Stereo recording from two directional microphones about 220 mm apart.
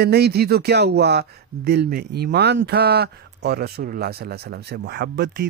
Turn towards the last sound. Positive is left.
turn(degrees=-45)  # may be behind; listen again after turning